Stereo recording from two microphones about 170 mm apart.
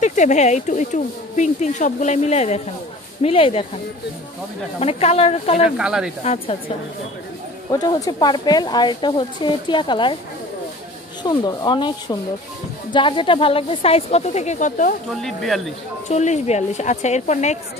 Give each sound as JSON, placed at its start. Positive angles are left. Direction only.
{"t": 0.0, "sound": "a woman's voice", "side_deg": 45}
{"t": 4.7, "sound": "a woman's voice", "side_deg": 35}
{"t": 5.8, "sound": "speech", "side_deg": -5}
{"t": 6.2, "sound": "a woman's voice", "side_deg": 40}
{"t": 7.8, "sound": "speech", "side_deg": 25}
{"t": 11.2, "sound": "a woman's voice", "side_deg": 25}
{"t": 15.2, "sound": "speech", "side_deg": 0}
{"t": 16.1, "sound": "speech", "side_deg": 40}